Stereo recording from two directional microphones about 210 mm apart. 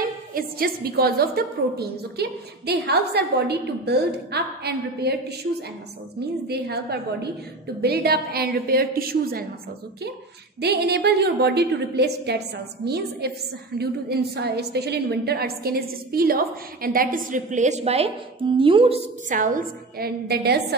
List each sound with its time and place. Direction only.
0.0 s a woman's voice: 45° right (ahead or behind)
6.4 s a woman's voice: 50° right (ahead or behind)
10.6 s a woman's voice: 50° right (ahead or behind); by 18.9 s 25° right (ahead or behind)
19.2 s a woman's voice: 40° right (ahead or behind)